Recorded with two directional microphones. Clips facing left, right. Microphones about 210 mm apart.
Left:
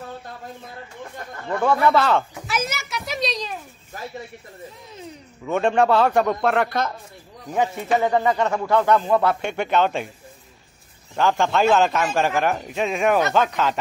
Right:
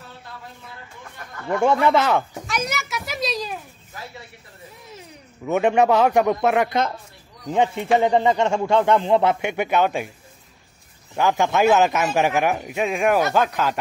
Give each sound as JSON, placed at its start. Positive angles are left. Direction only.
{"t": 1.5, "sound": "a man's voice", "side_deg": -20}
{"t": 2.4, "sound": "a sound", "side_deg": 5}
{"t": 5.4, "sound": "a man's voice", "side_deg": -10}
{"t": 9.4, "sound": "a man's voice", "side_deg": -10}
{"t": 11.1, "sound": "a man's voice", "side_deg": -15}